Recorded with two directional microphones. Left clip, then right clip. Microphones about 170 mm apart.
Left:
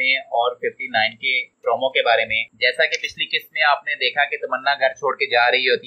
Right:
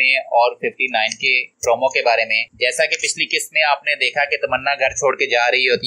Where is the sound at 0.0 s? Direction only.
20° right (ahead or behind).